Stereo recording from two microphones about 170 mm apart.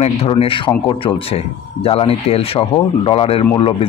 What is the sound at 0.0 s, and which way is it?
Speech, 35° left (ahead or behind).